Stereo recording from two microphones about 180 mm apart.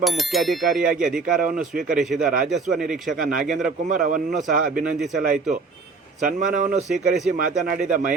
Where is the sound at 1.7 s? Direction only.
50° right (ahead or behind).